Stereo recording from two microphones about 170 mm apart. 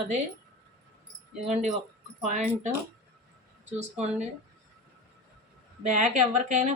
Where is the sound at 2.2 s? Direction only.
45° right (ahead or behind).